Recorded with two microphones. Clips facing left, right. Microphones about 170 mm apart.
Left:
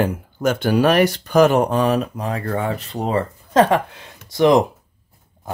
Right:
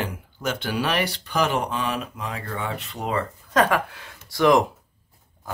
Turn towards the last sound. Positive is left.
turn(degrees=20)  # may be behind; listen again after turning